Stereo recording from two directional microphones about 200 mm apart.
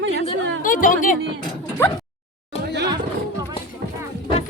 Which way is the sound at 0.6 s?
45° left (ahead or behind).